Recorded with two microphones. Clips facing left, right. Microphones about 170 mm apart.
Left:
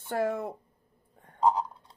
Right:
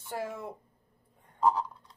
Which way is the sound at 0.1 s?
65° left (ahead or behind).